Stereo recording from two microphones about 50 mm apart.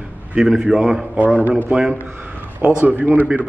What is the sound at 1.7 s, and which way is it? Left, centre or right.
A man's voice, right.